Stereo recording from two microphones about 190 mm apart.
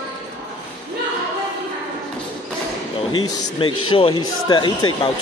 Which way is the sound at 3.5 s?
30° left (ahead or behind).